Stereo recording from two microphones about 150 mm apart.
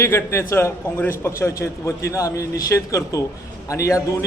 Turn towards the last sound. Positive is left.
turn(degrees=20)  # may be behind; listen again after turning